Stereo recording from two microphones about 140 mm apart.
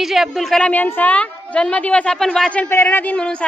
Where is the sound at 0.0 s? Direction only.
Centre (ahead or behind).